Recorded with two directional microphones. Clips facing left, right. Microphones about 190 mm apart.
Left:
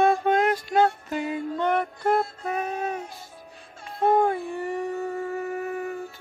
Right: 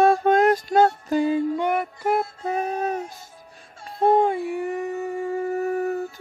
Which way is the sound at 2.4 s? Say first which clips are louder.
Right 3 dB; 30° right (ahead or behind).